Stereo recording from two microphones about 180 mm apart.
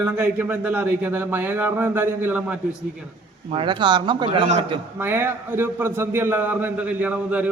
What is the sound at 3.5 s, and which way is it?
A man's voice, 30° right (ahead or behind).